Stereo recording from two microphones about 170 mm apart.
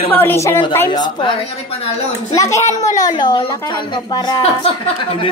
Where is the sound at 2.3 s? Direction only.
20° left (ahead or behind).